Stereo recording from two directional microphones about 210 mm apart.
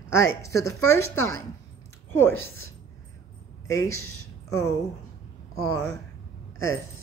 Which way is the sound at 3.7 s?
15° left (ahead or behind).